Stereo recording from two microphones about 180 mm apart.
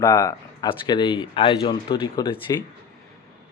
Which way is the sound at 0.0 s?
20° left (ahead or behind).